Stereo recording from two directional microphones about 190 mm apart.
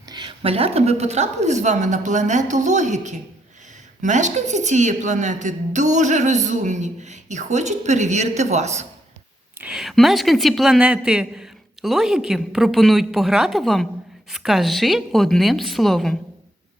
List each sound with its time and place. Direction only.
0.1 s a woman's voice: 25° right (ahead or behind)
9.6 s a woman's voice: 5° right (ahead or behind)